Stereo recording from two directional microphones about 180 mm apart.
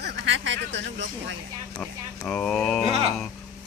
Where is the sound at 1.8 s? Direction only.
5° left (ahead or behind).